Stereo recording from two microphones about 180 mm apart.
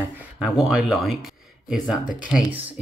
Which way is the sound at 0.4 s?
Centre (ahead or behind).